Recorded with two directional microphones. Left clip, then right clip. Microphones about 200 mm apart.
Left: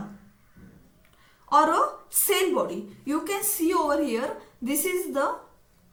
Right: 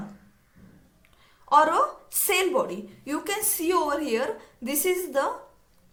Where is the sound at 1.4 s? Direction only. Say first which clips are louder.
Right 1 dB; 45° right (ahead or behind).